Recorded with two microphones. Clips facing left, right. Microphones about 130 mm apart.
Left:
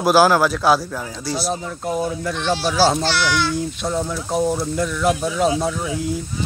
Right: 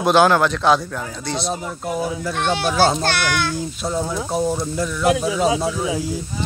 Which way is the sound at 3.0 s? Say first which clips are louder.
Left 1 dB; 55° right (ahead or behind).